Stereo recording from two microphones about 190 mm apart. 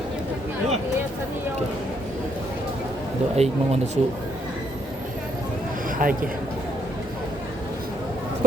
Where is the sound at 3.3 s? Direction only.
35° right (ahead or behind).